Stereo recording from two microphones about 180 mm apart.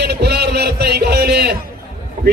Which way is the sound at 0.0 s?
65° right (ahead or behind).